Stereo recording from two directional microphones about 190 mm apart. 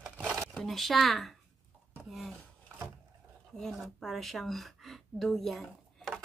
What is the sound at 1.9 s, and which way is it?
Speech, centre (ahead or behind).